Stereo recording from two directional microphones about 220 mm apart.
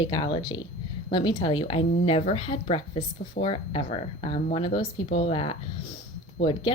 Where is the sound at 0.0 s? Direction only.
20° left (ahead or behind).